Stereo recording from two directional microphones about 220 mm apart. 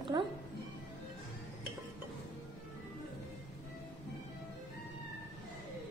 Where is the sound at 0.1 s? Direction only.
15° right (ahead or behind).